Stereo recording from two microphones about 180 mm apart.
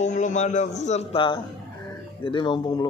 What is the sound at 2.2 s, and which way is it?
Music, 25° left (ahead or behind).